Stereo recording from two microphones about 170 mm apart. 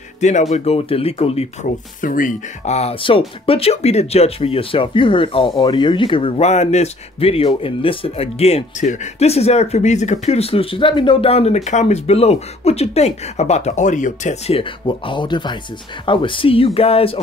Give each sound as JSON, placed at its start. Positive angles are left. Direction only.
{"t": 0.2, "sound": "speech", "side_deg": 45}
{"t": 2.0, "sound": "speech", "side_deg": 50}